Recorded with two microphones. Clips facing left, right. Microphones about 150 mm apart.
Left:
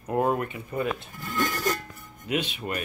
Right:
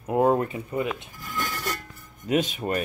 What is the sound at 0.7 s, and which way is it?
Speech, 20° right (ahead or behind).